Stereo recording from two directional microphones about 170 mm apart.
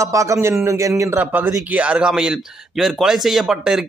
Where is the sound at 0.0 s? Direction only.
20° right (ahead or behind).